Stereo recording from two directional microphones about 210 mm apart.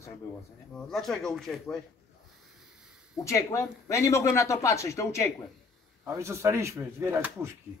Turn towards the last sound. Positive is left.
turn(degrees=-10)  # may be behind; listen again after turning